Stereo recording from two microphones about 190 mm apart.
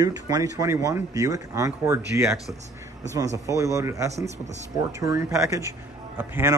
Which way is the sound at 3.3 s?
15° right (ahead or behind).